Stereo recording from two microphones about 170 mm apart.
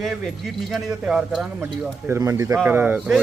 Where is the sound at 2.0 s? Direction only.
15° right (ahead or behind).